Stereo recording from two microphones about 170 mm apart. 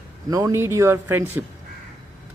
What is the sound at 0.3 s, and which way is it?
Speech, 20° right (ahead or behind).